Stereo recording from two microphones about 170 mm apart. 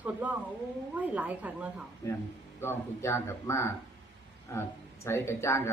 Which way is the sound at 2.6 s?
15° left (ahead or behind).